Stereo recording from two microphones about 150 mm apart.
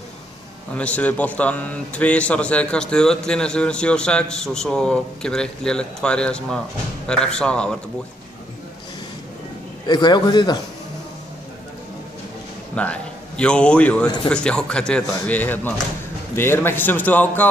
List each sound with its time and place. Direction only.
0.7 s a man's voice: 10° left (ahead or behind)
9.8 s a man's voice: 30° left (ahead or behind)
12.7 s a man's voice: 10° left (ahead or behind)